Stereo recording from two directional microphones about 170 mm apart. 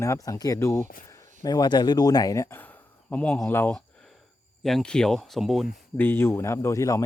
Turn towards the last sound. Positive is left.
turn(degrees=20)  # may be behind; listen again after turning